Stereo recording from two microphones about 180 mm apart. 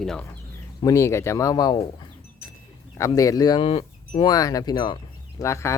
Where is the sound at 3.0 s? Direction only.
20° left (ahead or behind).